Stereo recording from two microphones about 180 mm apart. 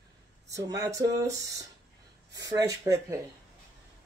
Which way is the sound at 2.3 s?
20° right (ahead or behind).